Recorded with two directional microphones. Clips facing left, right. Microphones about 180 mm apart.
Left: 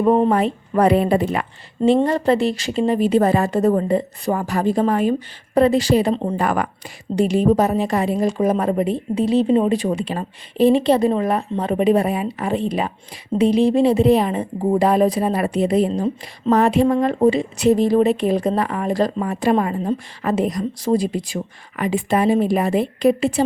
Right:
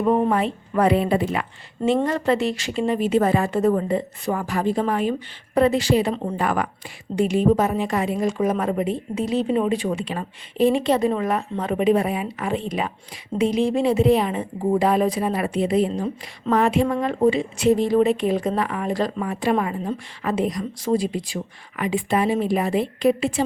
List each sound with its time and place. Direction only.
0.0 s speech: 25° left (ahead or behind)
0.3 s speech: 40° left (ahead or behind)
1.9 s speech: 30° left (ahead or behind)